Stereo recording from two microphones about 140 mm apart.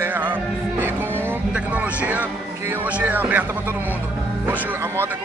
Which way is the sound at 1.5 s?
10° right (ahead or behind).